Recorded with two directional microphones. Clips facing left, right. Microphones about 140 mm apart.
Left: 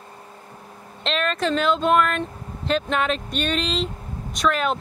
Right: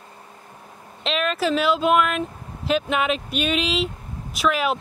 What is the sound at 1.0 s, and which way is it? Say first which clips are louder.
Speech: right 1 dB; 5° right (ahead or behind).